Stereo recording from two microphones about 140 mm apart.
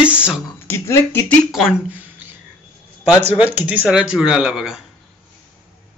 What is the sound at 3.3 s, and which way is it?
Speech, 10° right (ahead or behind).